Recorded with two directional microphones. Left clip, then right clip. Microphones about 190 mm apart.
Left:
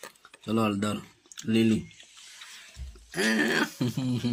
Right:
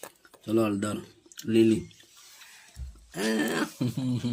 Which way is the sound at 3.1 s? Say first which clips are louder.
Left 3 dB; centre (ahead or behind).